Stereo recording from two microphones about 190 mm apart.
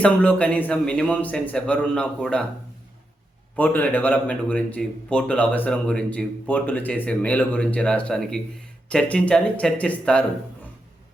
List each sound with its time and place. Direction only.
0.0 s a man's voice: 5° left (ahead or behind)
3.5 s a man's voice: 10° left (ahead or behind)